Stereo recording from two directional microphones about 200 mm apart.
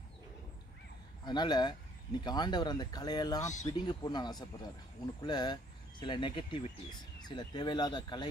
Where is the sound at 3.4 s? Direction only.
35° left (ahead or behind).